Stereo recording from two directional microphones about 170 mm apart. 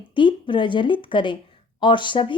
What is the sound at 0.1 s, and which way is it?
Speech, 30° left (ahead or behind).